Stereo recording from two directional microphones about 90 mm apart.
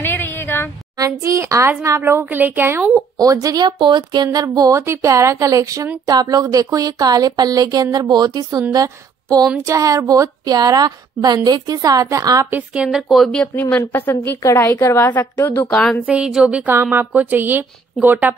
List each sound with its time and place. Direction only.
0.0 s a sound: 25° left (ahead or behind)
0.9 s speech: 35° right (ahead or behind)
3.2 s speech: 40° right (ahead or behind)
3.6 s a woman's voice: 60° right (ahead or behind); by 12.4 s 35° right (ahead or behind)
12.7 s speech: 5° right (ahead or behind)
13.6 s a woman's voice: 20° left (ahead or behind)
14.4 s a woman's voice: 35° left (ahead or behind)
14.9 s a woman's voice: 20° left (ahead or behind)
15.7 s speech: 10° left (ahead or behind)
16.1 s a woman's voice: 10° right (ahead or behind)